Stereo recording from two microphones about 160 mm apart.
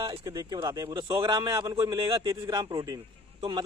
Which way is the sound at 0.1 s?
25° right (ahead or behind).